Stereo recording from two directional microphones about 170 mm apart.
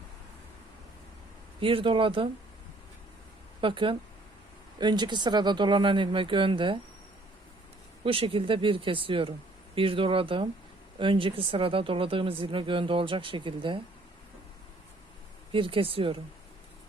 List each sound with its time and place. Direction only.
1.6 s speech: 30° right (ahead or behind)
3.6 s speech: 30° right (ahead or behind)
8.0 s speech: 30° right (ahead or behind)
15.5 s speech: 30° right (ahead or behind)